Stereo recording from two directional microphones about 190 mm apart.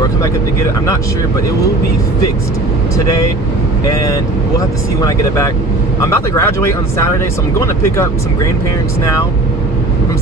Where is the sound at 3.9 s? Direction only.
20° left (ahead or behind).